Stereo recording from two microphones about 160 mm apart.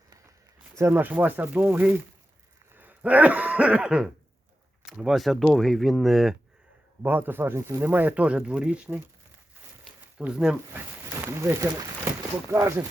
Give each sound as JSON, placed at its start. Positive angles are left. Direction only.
{"t": 0.8, "sound": "speech", "side_deg": -15}
{"t": 2.7, "sound": "cough", "side_deg": -10}
{"t": 4.9, "sound": "speech", "side_deg": -5}
{"t": 7.0, "sound": "speech", "side_deg": -10}
{"t": 10.2, "sound": "speech", "side_deg": -5}
{"t": 11.0, "sound": "speech", "side_deg": -15}